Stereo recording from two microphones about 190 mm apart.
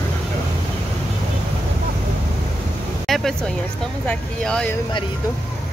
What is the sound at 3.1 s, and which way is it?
Speech, centre (ahead or behind).